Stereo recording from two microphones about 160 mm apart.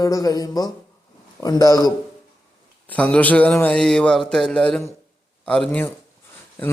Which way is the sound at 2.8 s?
10° left (ahead or behind).